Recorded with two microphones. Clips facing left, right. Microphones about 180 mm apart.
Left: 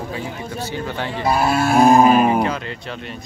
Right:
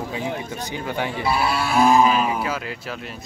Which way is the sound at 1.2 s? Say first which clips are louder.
Left 6 dB; 45° left (ahead or behind).